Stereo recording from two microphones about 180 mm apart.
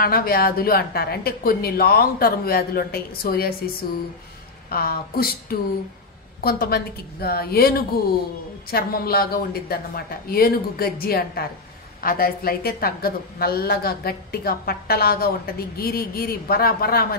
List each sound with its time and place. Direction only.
0.0 s a woman's voice: 55° left (ahead or behind)
4.6 s a woman's voice: 55° left (ahead or behind)